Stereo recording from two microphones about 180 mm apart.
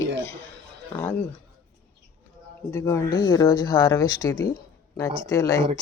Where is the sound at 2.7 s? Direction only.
15° left (ahead or behind).